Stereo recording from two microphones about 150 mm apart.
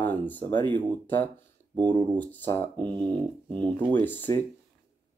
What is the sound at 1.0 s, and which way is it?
Speech, 10° left (ahead or behind).